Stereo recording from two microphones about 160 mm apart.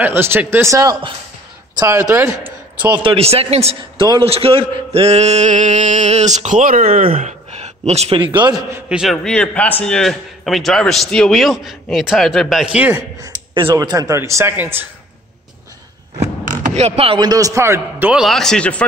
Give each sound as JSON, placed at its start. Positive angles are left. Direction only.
{"t": 0.0, "sound": "a man's voice", "side_deg": -15}
{"t": 2.4, "sound": "a sound", "side_deg": -10}
{"t": 3.0, "sound": "a man's voice", "side_deg": -35}
{"t": 7.2, "sound": "a man's voice", "side_deg": -45}
{"t": 8.8, "sound": "a man's voice", "side_deg": -5}
{"t": 16.2, "sound": "speech", "side_deg": -40}
{"t": 18.2, "sound": "a man's voice", "side_deg": 0}